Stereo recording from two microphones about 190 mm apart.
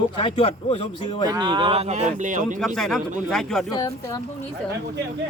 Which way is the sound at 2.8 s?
Centre (ahead or behind).